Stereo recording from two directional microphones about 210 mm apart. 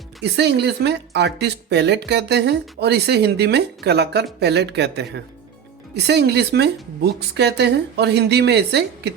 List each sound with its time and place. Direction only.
0.2 s speech: 55° right (ahead or behind)